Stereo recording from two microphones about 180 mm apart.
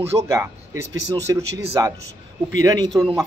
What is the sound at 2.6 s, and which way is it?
Speech, 20° right (ahead or behind).